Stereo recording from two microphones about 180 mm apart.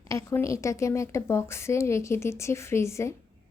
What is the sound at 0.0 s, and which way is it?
A woman's voice, 15° left (ahead or behind).